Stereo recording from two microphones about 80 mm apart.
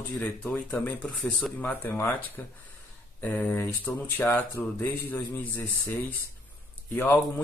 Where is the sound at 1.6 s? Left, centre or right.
Left.